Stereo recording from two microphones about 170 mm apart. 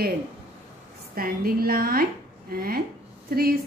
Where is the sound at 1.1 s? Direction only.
60° right (ahead or behind).